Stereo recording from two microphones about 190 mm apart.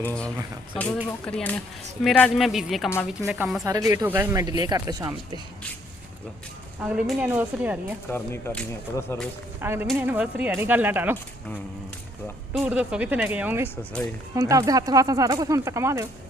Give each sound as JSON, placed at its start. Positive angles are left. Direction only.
{"t": 0.0, "sound": "a man's voice", "side_deg": 5}
{"t": 6.8, "sound": "speech", "side_deg": -5}
{"t": 8.1, "sound": "speech", "side_deg": 10}
{"t": 9.6, "sound": "speech", "side_deg": -10}
{"t": 12.5, "sound": "speech", "side_deg": -5}